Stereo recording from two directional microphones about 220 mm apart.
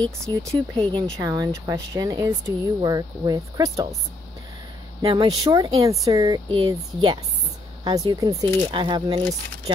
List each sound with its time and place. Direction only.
0.0 s speech: 15° right (ahead or behind)
5.0 s speech: 20° right (ahead or behind)